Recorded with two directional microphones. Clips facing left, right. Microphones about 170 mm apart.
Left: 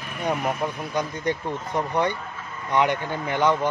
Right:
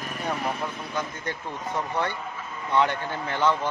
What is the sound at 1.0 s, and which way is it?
Speech, 15° left (ahead or behind).